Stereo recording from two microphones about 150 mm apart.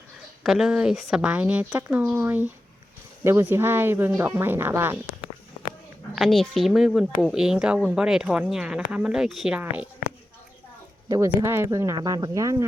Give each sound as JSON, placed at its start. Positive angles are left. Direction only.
{"t": 0.4, "sound": "a woman's voice", "side_deg": -5}
{"t": 3.5, "sound": "a woman's voice", "side_deg": -15}
{"t": 6.1, "sound": "speech", "side_deg": 0}
{"t": 11.1, "sound": "speech", "side_deg": -20}